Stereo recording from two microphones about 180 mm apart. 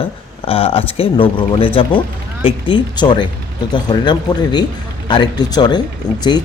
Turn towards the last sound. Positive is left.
turn(degrees=25)  # may be behind; listen again after turning